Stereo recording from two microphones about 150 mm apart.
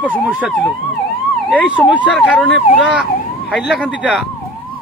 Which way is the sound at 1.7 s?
10° right (ahead or behind).